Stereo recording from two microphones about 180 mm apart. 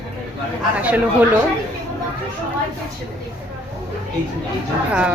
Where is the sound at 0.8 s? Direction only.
10° right (ahead or behind).